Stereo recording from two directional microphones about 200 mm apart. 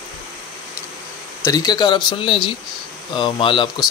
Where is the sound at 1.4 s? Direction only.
20° left (ahead or behind).